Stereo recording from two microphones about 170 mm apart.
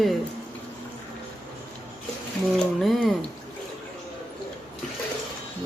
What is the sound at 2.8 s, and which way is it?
Mantra, centre (ahead or behind).